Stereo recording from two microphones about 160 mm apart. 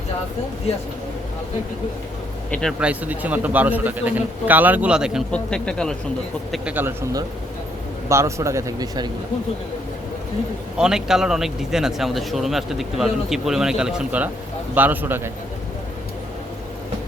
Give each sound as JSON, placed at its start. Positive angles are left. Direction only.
{"t": 2.5, "sound": "a man's voice", "side_deg": 5}
{"t": 2.8, "sound": "a man's voice", "side_deg": -10}
{"t": 6.5, "sound": "a man's voice", "side_deg": -10}
{"t": 8.1, "sound": "speech", "side_deg": -20}
{"t": 10.8, "sound": "a man's voice", "side_deg": -5}